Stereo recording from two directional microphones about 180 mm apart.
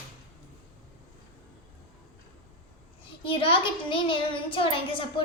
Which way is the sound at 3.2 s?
30° left (ahead or behind).